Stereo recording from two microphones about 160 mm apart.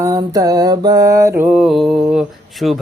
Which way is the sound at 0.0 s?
20° right (ahead or behind).